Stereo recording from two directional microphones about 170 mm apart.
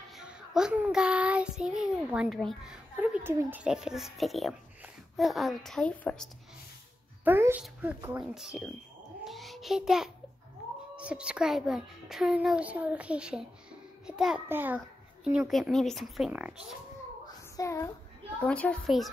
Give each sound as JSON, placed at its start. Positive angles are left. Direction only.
{"t": 0.2, "sound": "child singing", "side_deg": -5}
{"t": 7.2, "sound": "speech", "side_deg": -15}
{"t": 7.6, "sound": "child singing", "side_deg": -10}
{"t": 9.2, "sound": "a child's voice", "side_deg": 0}
{"t": 11.0, "sound": "child singing", "side_deg": -5}
{"t": 17.6, "sound": "a child's voice", "side_deg": 15}
{"t": 18.4, "sound": "child singing", "side_deg": 5}